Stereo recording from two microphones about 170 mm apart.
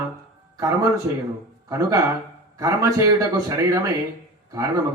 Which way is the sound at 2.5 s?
20° right (ahead or behind).